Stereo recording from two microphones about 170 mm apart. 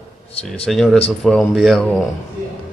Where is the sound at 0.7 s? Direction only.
Centre (ahead or behind).